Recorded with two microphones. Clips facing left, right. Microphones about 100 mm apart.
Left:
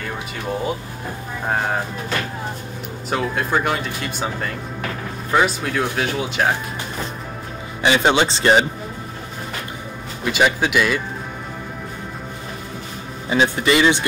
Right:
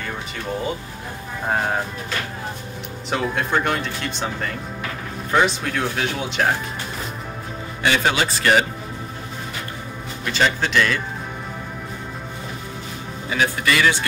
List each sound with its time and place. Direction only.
3.1 s speech: centre (ahead or behind)
7.8 s a man's voice: 20° left (ahead or behind)
10.2 s speech: 15° left (ahead or behind)
13.3 s a man's voice: 25° left (ahead or behind)